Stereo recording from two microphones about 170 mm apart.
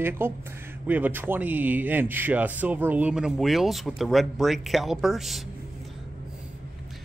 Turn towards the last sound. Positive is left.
turn(degrees=0)  # may be behind; listen again after turning